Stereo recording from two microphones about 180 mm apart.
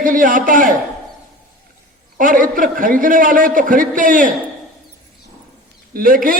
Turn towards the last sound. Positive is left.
turn(degrees=-50)  # may be behind; listen again after turning